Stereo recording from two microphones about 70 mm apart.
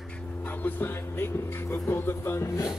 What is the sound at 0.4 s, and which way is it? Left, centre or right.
Speech, left.